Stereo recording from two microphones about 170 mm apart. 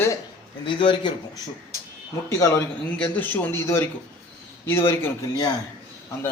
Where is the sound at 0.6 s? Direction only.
30° left (ahead or behind).